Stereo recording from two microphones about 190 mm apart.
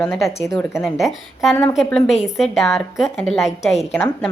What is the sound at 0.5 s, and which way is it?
Speech, 15° left (ahead or behind).